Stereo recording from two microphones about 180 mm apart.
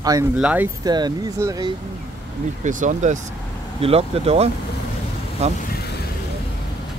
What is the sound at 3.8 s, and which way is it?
Speech, 35° right (ahead or behind).